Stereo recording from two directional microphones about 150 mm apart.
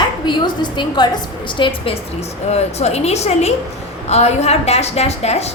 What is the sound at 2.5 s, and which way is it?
A woman's voice, 45° left (ahead or behind).